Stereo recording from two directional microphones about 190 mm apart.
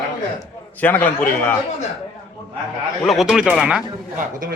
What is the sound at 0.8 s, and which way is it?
Speech, 10° left (ahead or behind).